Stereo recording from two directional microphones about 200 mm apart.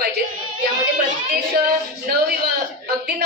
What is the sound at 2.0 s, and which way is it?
Speech, 50° right (ahead or behind).